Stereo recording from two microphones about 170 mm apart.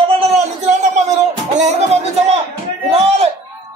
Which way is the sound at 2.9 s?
35° right (ahead or behind).